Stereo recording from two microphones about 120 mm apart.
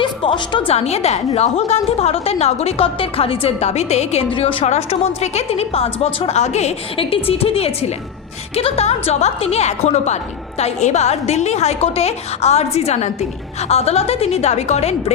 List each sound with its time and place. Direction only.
0.0 s a woman's voice: 45° left (ahead or behind)
0.7 s a woman's voice: 60° left (ahead or behind)
4.6 s a woman's voice: 65° left (ahead or behind)
6.9 s a woman's voice: 50° left (ahead or behind)